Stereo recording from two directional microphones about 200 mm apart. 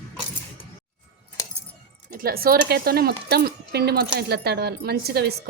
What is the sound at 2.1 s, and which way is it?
Speech, 50° right (ahead or behind).